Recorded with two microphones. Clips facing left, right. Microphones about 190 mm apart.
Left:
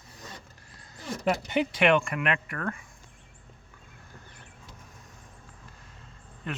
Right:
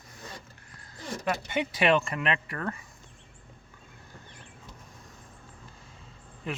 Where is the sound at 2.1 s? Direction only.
25° right (ahead or behind).